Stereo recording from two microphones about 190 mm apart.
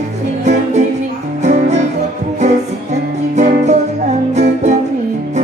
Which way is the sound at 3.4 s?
40° right (ahead or behind).